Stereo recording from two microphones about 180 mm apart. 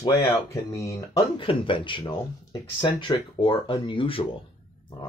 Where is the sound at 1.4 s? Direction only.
30° left (ahead or behind).